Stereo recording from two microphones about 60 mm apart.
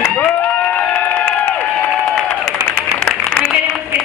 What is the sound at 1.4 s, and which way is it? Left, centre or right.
Crowd, left.